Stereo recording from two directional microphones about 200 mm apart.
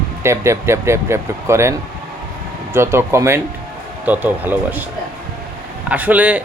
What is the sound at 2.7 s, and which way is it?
Speech, 15° right (ahead or behind).